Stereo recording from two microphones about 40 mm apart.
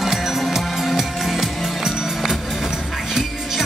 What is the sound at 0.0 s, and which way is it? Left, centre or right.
Music, centre.